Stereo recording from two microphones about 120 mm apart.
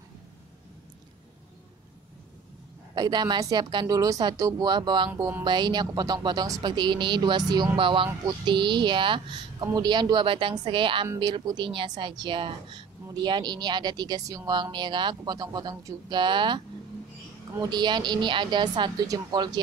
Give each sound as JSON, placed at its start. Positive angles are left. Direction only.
{"t": 2.9, "sound": "speech", "side_deg": -35}